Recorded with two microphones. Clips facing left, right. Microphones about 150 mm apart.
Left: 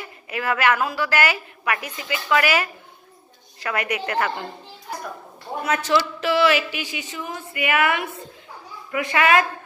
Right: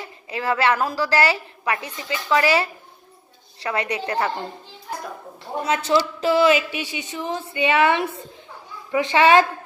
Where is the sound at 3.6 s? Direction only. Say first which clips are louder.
Right 1 dB; 30° right (ahead or behind).